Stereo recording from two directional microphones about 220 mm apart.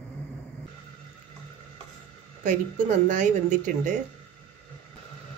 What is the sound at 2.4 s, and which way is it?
Speech, 35° right (ahead or behind).